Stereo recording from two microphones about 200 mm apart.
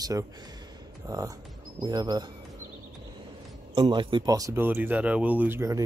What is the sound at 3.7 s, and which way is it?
Speech, 25° right (ahead or behind).